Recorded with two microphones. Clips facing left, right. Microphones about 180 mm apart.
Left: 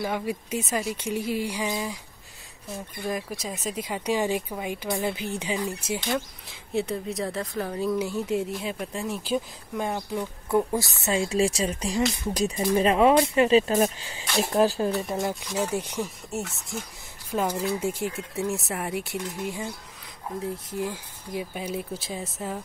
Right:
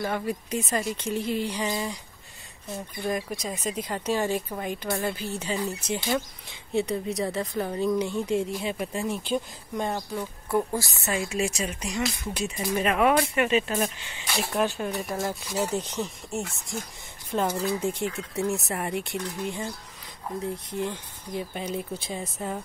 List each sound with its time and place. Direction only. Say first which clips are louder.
0.0 s speech: even; 10° left (ahead or behind)
3.0 s a woman's voice: right 1 dB; centre (ahead or behind)